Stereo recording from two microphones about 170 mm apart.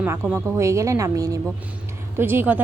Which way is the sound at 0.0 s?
10° right (ahead or behind).